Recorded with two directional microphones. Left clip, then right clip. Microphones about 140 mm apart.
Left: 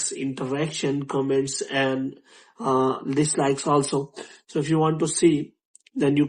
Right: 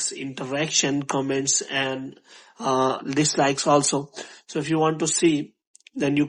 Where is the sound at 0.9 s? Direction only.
50° right (ahead or behind).